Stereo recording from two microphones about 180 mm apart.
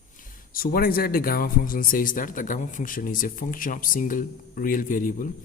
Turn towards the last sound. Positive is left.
turn(degrees=50)  # may be behind; listen again after turning